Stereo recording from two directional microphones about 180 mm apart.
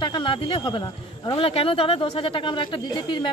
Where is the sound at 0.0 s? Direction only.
25° left (ahead or behind).